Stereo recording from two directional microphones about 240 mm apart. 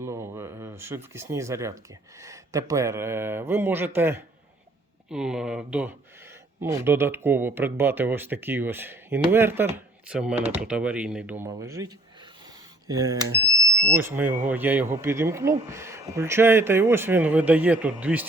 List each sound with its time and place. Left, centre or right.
0.0 s speech: centre
10.3 s speech: right
10.6 s speech: centre
12.9 s speech: centre